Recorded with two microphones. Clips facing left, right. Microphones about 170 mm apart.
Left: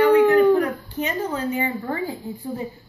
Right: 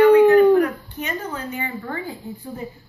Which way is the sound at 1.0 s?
30° left (ahead or behind).